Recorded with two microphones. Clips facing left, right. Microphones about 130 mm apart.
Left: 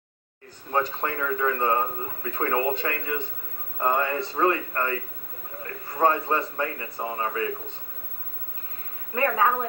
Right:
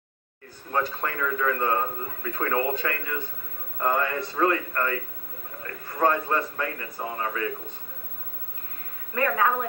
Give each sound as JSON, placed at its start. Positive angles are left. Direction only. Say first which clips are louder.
{"t": 0.7, "sound": "a man's voice", "louder": "left 1 dB", "side_deg": 15}
{"t": 9.1, "sound": "a man's voice", "louder": "left 1 dB", "side_deg": 20}